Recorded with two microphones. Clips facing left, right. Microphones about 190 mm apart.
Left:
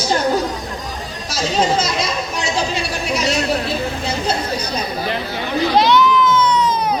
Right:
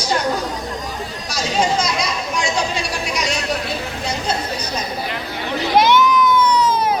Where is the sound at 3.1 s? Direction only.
35° left (ahead or behind).